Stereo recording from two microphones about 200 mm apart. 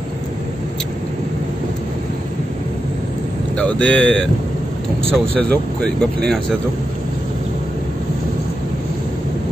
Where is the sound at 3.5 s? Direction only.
5° left (ahead or behind).